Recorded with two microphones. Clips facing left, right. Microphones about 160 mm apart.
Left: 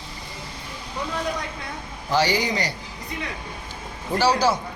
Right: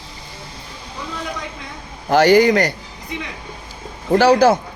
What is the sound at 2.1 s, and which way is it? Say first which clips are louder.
Speech: right 10 dB; 50° right (ahead or behind).